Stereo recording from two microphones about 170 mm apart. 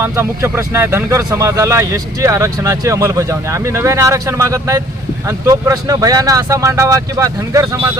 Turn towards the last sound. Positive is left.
turn(degrees=-20)  # may be behind; listen again after turning